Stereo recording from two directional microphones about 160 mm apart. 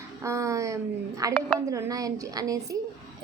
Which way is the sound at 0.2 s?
20° right (ahead or behind).